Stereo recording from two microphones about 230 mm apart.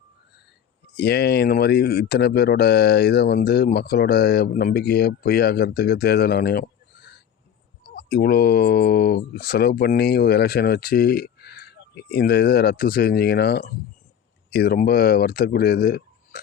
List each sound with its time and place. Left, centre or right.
0.9 s speech: left